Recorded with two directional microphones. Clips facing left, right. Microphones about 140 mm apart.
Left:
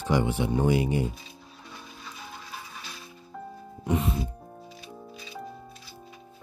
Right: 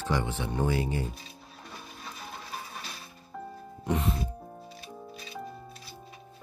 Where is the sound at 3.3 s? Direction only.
Centre (ahead or behind).